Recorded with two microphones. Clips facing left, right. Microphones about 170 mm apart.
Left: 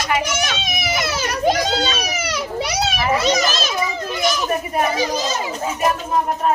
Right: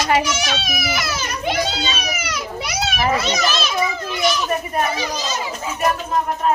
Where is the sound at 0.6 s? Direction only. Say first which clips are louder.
Left 1 dB; 20° left (ahead or behind).